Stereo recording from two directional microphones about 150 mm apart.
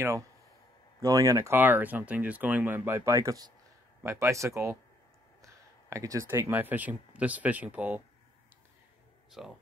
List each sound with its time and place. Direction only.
1.0 s speech: 20° right (ahead or behind)
9.4 s speech: centre (ahead or behind)